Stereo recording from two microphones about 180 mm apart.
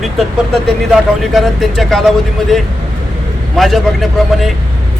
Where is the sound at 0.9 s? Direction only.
Centre (ahead or behind).